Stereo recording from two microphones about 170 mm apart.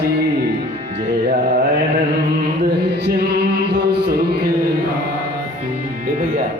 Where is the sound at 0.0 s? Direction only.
70° right (ahead or behind).